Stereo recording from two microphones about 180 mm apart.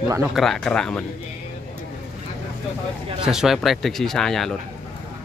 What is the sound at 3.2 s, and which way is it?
Speech, centre (ahead or behind).